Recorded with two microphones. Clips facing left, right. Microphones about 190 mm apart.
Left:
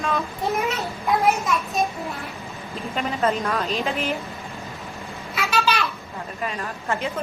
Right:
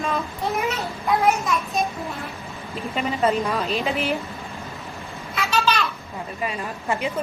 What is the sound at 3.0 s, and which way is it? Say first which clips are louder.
A child's voice: right 2 dB; 5° right (ahead or behind).